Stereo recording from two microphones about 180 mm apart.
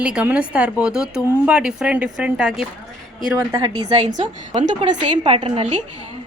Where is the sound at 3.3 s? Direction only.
15° right (ahead or behind).